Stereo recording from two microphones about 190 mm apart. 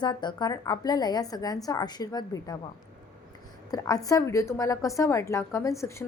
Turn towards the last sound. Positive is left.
turn(degrees=15)  # may be behind; listen again after turning